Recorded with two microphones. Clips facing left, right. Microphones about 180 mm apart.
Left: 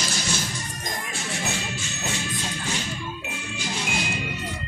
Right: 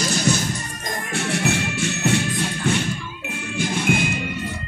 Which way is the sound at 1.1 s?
65° right (ahead or behind).